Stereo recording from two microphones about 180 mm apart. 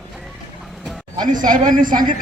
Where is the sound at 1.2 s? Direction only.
45° right (ahead or behind).